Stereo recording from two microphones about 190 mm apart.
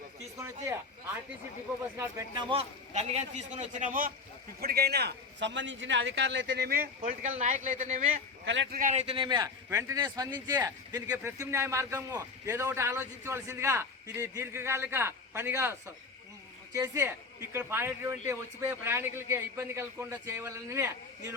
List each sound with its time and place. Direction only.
0.3 s a man's voice: 15° right (ahead or behind); by 8.1 s 40° right (ahead or behind)
8.4 s a man's voice: 75° right (ahead or behind)
8.7 s a man's voice: 40° right (ahead or behind); by 21.3 s 15° right (ahead or behind)